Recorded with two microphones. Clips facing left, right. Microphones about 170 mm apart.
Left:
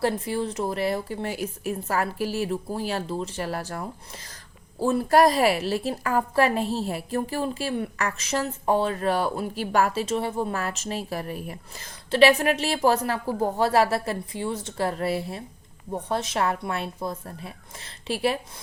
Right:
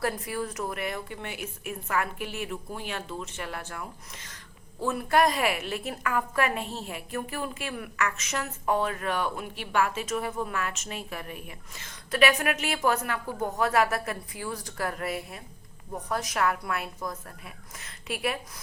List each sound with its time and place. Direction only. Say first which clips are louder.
0.0 s a woman's voice: left 5 dB; 30° left (ahead or behind)